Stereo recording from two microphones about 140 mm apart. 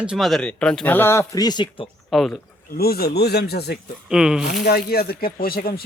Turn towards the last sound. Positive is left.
turn(degrees=90)